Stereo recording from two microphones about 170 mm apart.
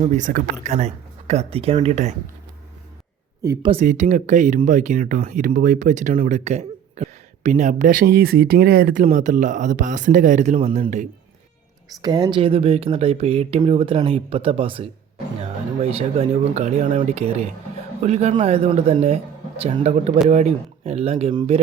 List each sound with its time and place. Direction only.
0.1 s speech: 50° right (ahead or behind)
3.4 s speech: 20° right (ahead or behind)
3.7 s speech: 45° right (ahead or behind)
12.0 s speech: 25° right (ahead or behind)